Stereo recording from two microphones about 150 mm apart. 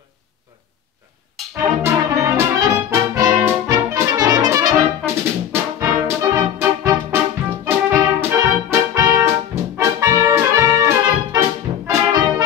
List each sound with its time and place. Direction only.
1.6 s brass instrument: 20° right (ahead or behind)
7.6 s music: 15° right (ahead or behind)
11.9 s brass instrument: 25° right (ahead or behind)